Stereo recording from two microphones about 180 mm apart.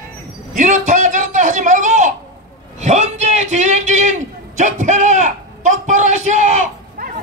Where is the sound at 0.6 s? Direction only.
45° right (ahead or behind).